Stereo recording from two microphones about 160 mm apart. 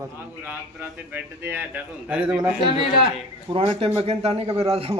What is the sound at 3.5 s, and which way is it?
A man's voice, 35° right (ahead or behind).